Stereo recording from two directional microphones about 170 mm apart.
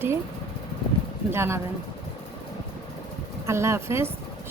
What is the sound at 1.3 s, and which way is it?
Speech, 15° right (ahead or behind).